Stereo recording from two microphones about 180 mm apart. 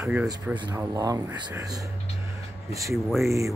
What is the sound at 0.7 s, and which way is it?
Speech, 15° right (ahead or behind).